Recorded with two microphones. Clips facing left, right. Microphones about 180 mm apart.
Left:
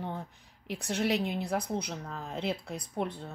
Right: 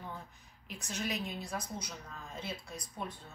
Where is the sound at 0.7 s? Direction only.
65° left (ahead or behind).